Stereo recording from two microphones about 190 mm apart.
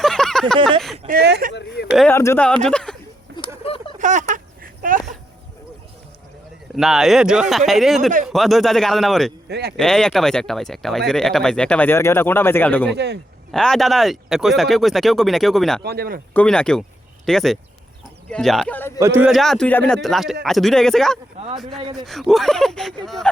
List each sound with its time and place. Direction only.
0.0 s a sound: 5° left (ahead or behind)
1.0 s speech: 55° right (ahead or behind)
1.5 s speech: 65° left (ahead or behind)
2.0 s speech: 10° left (ahead or behind)
3.6 s a sound: 30° left (ahead or behind)
3.9 s speech: 40° right (ahead or behind)
6.7 s speech: centre (ahead or behind)
9.5 s speech: 60° right (ahead or behind)
9.7 s speech: 5° left (ahead or behind)
15.8 s speech: 55° right (ahead or behind)
16.3 s speech: 5° left (ahead or behind)
18.9 s speech: 15° right (ahead or behind)
19.3 s speech: centre (ahead or behind)